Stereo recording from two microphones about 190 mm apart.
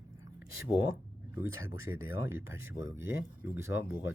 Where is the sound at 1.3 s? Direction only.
15° right (ahead or behind).